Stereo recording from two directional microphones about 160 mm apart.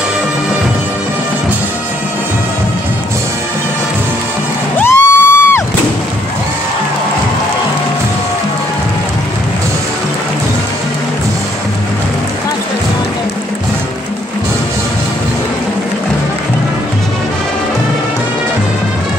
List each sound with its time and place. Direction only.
4.7 s music: 15° left (ahead or behind)